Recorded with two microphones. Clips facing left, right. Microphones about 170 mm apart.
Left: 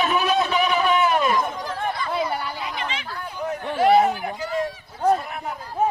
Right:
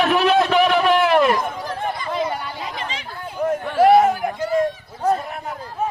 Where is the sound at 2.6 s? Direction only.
35° right (ahead or behind).